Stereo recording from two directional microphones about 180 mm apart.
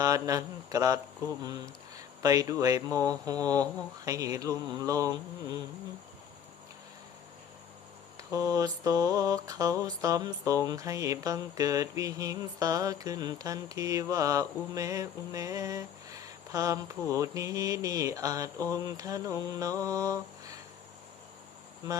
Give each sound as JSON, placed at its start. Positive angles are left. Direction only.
{"t": 0.0, "sound": "mantra", "side_deg": -20}
{"t": 8.3, "sound": "mantra", "side_deg": -20}